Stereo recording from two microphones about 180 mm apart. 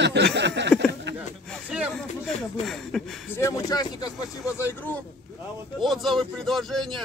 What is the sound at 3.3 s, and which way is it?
Speech, 15° left (ahead or behind).